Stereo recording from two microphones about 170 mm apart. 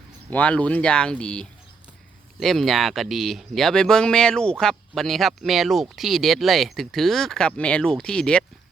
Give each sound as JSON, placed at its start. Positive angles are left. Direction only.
{"t": 0.3, "sound": "speech", "side_deg": 10}